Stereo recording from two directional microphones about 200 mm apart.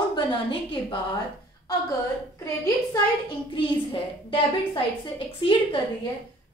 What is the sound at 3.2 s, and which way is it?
A woman's voice, 25° left (ahead or behind).